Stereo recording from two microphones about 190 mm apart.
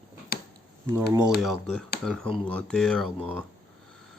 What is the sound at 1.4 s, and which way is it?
Speech, centre (ahead or behind).